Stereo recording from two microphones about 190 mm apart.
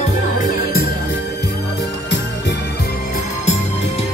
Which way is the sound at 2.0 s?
65° left (ahead or behind).